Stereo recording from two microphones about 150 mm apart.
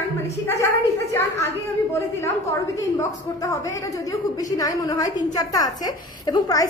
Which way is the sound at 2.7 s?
20° left (ahead or behind).